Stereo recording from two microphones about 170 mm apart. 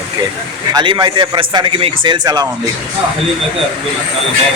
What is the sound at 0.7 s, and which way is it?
A man's voice, 25° right (ahead or behind).